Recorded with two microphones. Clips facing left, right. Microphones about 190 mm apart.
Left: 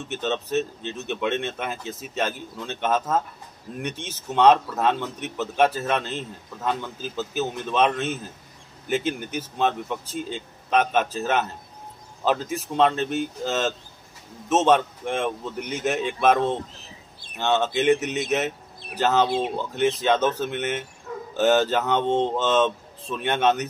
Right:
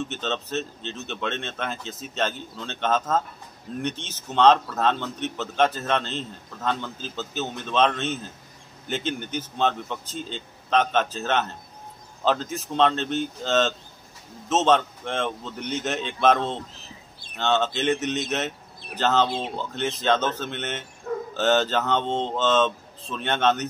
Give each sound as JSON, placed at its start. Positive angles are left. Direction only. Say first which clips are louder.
{"t": 0.1, "sound": "a man's voice", "louder": "left 4 dB", "side_deg": 15}
{"t": 21.1, "sound": "a sound", "louder": "right 8 dB", "side_deg": -50}
{"t": 21.4, "sound": "a man's voice", "louder": "left 3 dB", "side_deg": 10}